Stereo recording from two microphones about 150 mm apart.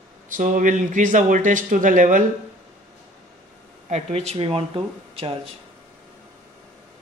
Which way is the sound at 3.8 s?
50° right (ahead or behind).